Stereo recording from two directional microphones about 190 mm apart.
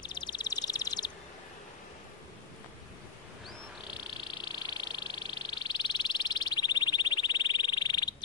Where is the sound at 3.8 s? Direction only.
25° left (ahead or behind).